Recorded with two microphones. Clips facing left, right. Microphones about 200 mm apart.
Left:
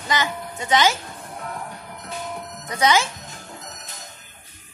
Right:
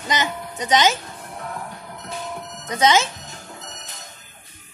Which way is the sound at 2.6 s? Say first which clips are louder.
Right 2 dB; 20° right (ahead or behind).